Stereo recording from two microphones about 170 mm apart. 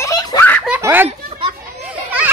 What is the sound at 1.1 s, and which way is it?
Children playing, 30° right (ahead or behind).